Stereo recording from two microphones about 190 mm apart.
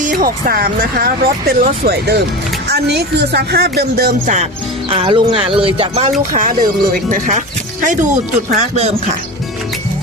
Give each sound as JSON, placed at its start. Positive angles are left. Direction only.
{"t": 0.0, "sound": "speech", "side_deg": -45}
{"t": 4.9, "sound": "speech", "side_deg": -30}